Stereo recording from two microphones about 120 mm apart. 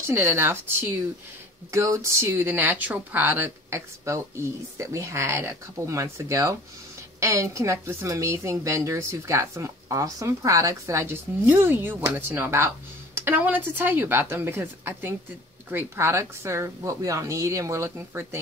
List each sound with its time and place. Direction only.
0.0 s a woman's voice: 20° right (ahead or behind)